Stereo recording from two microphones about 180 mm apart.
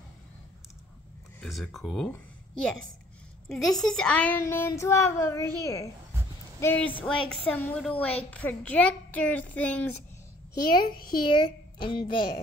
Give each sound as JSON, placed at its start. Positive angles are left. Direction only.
{"t": 1.4, "sound": "speech", "side_deg": 0}
{"t": 3.4, "sound": "a child's voice", "side_deg": 0}
{"t": 10.8, "sound": "a child's voice", "side_deg": 55}
{"t": 11.3, "sound": "a woman's voice", "side_deg": 25}